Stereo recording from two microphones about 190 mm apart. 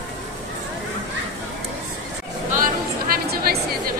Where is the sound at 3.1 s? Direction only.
55° right (ahead or behind).